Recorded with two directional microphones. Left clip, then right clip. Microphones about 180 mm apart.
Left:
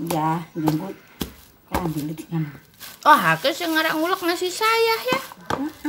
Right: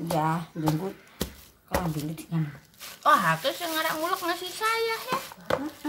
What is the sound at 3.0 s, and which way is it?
Speech, 35° left (ahead or behind).